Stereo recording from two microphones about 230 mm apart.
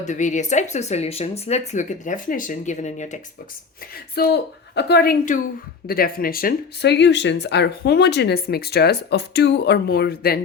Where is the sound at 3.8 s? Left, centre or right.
Left.